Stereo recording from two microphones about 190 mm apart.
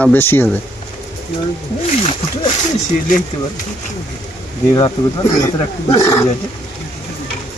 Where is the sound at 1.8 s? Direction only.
30° left (ahead or behind).